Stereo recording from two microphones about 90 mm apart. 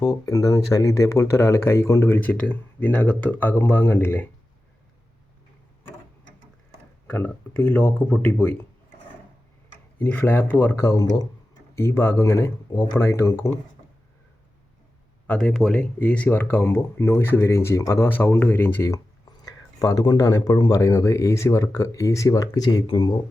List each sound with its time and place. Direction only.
0.0 s speech: 45° left (ahead or behind); by 4.3 s 25° left (ahead or behind)
7.1 s speech: 15° left (ahead or behind)
10.0 s speech: 20° left (ahead or behind)
10.8 s speech: 40° left (ahead or behind)
15.3 s speech: 10° left (ahead or behind); by 18.9 s 30° left (ahead or behind)
19.5 s speech: 40° left (ahead or behind)
22.9 s speech: 65° left (ahead or behind)